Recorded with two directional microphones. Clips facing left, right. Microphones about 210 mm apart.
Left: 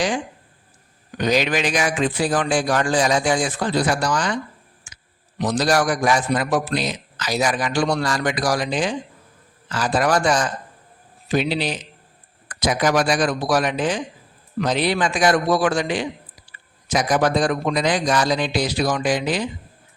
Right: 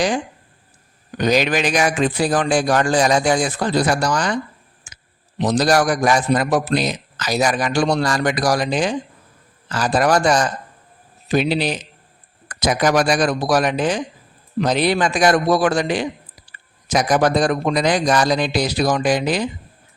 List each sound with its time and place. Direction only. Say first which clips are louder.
1.2 s a man's voice: right 2 dB; 40° right (ahead or behind)
4.9 s a sound: right 2 dB; 40° right (ahead or behind)
5.4 s a man's voice: right 3 dB; 40° right (ahead or behind)